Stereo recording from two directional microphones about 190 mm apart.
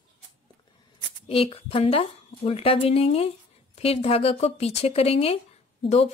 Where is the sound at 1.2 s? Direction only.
30° left (ahead or behind).